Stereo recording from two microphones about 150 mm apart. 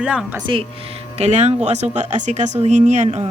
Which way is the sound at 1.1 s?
45° right (ahead or behind).